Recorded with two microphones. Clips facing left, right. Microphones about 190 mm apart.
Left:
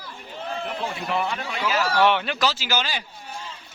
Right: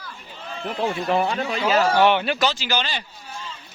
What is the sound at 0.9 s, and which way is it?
Speech, 40° right (ahead or behind).